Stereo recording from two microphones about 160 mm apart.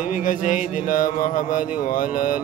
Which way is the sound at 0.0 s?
55° left (ahead or behind).